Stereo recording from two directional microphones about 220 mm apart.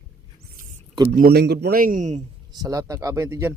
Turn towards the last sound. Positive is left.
turn(degrees=-15)  # may be behind; listen again after turning